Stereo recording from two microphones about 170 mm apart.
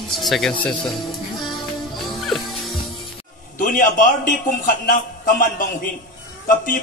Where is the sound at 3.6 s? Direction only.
55° left (ahead or behind).